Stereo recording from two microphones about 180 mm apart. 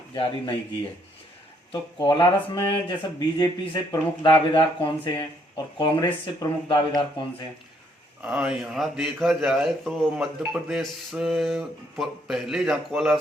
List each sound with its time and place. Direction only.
0.1 s speech: 25° left (ahead or behind)
1.7 s speech: 25° left (ahead or behind)
8.2 s a man's voice: 5° right (ahead or behind)